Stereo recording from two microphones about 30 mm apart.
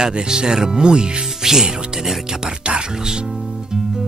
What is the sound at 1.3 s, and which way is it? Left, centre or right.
Speech, centre.